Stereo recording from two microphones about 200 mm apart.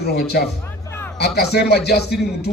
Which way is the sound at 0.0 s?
55° left (ahead or behind).